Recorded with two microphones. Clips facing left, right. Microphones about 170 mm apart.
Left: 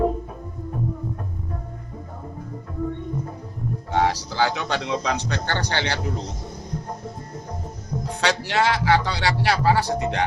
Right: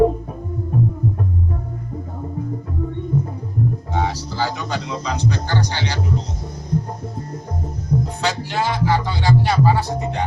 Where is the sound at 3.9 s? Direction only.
75° left (ahead or behind).